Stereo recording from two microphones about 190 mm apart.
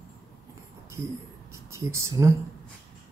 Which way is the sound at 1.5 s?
15° right (ahead or behind).